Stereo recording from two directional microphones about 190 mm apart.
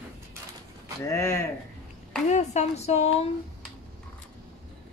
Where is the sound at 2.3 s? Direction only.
35° left (ahead or behind).